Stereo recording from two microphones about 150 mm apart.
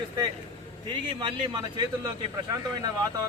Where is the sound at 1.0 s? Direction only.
30° right (ahead or behind).